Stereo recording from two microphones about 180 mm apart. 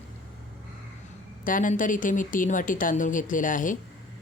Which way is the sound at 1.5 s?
50° left (ahead or behind).